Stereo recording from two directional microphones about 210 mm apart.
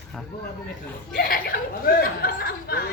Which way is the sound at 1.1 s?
45° left (ahead or behind).